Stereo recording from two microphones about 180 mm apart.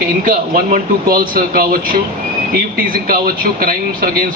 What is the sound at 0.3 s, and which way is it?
Speech, 50° right (ahead or behind).